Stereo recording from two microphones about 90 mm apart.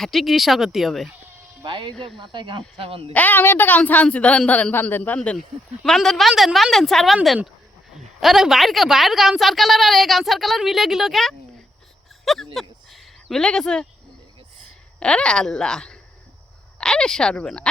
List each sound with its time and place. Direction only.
0.0 s a woman's voice: centre (ahead or behind)
1.6 s speech: 55° right (ahead or behind); by 3.1 s 90° right
3.1 s a woman's voice: 20° left (ahead or behind); by 12.5 s centre (ahead or behind)
12.5 s a sound: centre (ahead or behind)
14.9 s a woman's voice: 10° left (ahead or behind)